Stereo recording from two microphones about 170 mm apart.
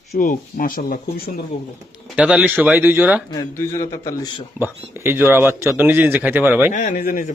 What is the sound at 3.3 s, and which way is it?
A man's voice, 20° left (ahead or behind).